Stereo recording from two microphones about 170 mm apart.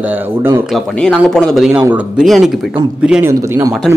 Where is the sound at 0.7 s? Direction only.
5° left (ahead or behind).